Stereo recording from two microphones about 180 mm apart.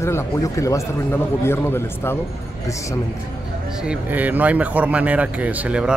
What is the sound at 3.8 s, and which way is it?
Speech, 10° right (ahead or behind).